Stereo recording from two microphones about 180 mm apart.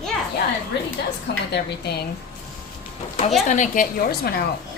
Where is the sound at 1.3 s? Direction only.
70° left (ahead or behind).